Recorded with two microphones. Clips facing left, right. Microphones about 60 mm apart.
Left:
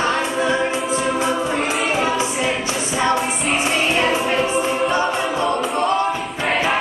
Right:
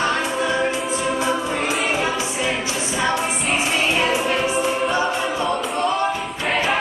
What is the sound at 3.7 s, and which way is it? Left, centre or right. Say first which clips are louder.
Music: left 1 dB; left.